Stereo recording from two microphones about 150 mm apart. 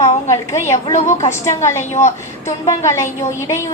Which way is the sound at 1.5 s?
20° left (ahead or behind).